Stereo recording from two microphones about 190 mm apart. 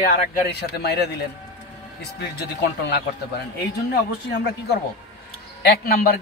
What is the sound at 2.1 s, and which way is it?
Speech, 60° left (ahead or behind).